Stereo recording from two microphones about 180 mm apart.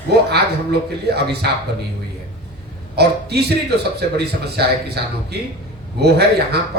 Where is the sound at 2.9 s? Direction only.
65° right (ahead or behind).